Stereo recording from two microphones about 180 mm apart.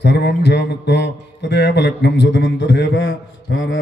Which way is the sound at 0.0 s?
65° left (ahead or behind).